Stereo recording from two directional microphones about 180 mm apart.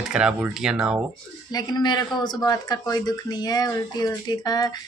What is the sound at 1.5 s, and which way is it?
Speech, 20° left (ahead or behind).